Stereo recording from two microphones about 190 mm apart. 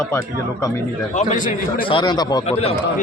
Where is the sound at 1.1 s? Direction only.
40° left (ahead or behind).